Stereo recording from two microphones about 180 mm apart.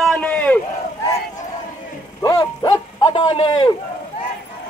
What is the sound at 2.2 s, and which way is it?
Bow-wow, 20° left (ahead or behind).